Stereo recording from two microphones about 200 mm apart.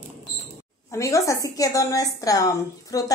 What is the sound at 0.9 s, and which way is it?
A woman's voice, 15° left (ahead or behind).